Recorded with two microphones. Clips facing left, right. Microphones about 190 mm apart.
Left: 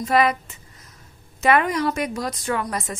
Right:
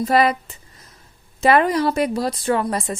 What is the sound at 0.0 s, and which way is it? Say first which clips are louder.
A woman's voice: right 2 dB; 35° right (ahead or behind).